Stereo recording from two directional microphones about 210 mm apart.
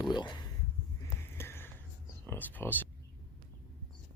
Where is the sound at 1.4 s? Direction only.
10° left (ahead or behind).